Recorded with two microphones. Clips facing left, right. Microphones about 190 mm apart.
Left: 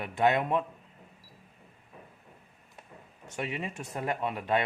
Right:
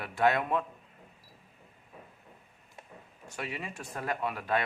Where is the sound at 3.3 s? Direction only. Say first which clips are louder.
Left 4 dB; 20° left (ahead or behind).